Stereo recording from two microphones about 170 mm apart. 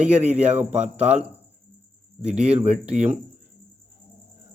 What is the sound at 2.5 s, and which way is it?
Speech, 40° right (ahead or behind).